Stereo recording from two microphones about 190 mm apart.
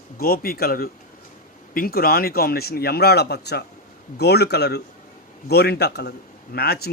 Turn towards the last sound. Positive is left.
turn(degrees=55)  # may be behind; listen again after turning